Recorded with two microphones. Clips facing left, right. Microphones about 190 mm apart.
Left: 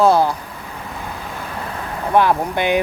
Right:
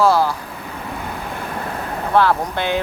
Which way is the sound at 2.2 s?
15° left (ahead or behind).